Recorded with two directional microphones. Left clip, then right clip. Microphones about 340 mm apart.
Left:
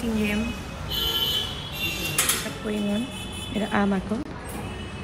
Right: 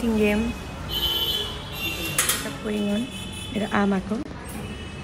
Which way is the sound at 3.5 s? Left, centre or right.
Centre.